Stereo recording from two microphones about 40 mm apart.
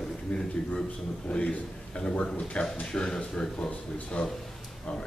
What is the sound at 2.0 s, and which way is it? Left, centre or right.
Speech, left.